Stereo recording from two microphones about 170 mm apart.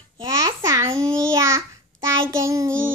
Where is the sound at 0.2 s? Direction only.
25° right (ahead or behind).